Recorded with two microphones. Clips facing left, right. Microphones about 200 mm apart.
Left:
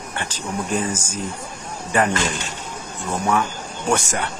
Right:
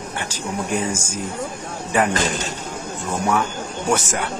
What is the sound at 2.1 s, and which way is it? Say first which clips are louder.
Speech: right 2 dB; 40° right (ahead or behind).